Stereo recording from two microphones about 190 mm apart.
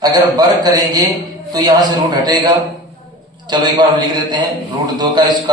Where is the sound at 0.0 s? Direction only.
20° right (ahead or behind).